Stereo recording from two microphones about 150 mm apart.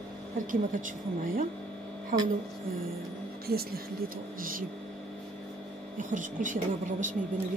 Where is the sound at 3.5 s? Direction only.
90° right.